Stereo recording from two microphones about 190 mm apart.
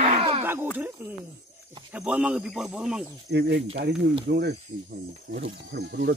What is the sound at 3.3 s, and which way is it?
Speech, 60° right (ahead or behind).